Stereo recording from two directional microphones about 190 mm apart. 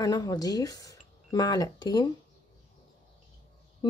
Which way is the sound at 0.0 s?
20° left (ahead or behind).